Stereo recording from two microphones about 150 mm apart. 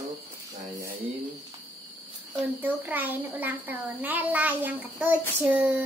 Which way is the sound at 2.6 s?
10° right (ahead or behind).